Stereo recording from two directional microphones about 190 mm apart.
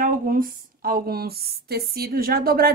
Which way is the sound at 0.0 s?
45° right (ahead or behind).